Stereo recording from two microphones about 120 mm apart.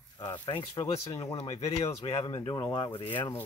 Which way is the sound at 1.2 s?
55° left (ahead or behind).